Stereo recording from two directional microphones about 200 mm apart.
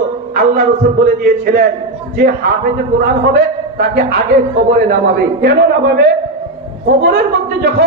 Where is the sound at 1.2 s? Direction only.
60° right (ahead or behind).